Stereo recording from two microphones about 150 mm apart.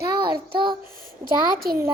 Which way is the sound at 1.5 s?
80° right.